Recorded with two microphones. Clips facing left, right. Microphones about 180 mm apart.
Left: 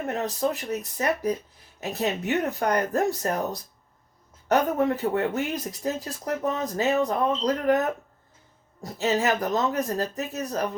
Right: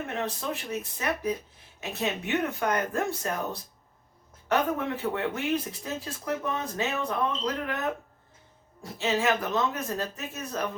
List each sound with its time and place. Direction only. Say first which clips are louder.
0.1 s speech: left 9 dB; 40° left (ahead or behind)